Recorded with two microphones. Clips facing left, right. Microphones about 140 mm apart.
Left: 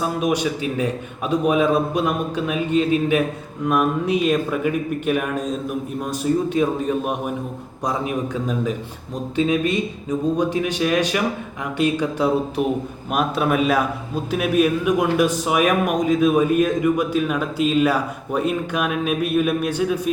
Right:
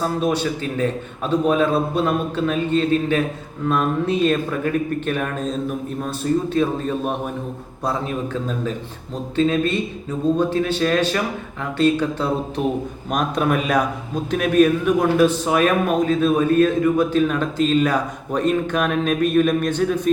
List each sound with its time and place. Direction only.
0.0 s a man's voice: 10° left (ahead or behind)